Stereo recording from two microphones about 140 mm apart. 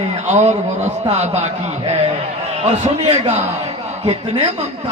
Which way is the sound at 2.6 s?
50° right (ahead or behind).